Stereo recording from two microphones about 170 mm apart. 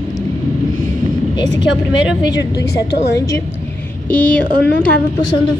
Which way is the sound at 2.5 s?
75° left (ahead or behind).